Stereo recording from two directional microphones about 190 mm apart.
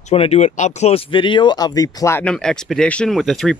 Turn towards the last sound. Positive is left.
turn(degrees=0)  # may be behind; listen again after turning